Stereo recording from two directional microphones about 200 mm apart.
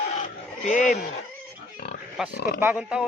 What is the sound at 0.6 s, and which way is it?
Speech, 40° left (ahead or behind).